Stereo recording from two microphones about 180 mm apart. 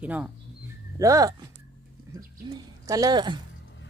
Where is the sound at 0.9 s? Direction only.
20° right (ahead or behind).